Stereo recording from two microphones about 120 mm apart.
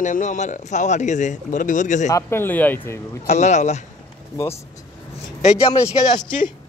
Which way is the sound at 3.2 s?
70° left (ahead or behind).